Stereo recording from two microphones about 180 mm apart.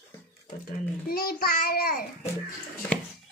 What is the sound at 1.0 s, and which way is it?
Child singing, 55° left (ahead or behind).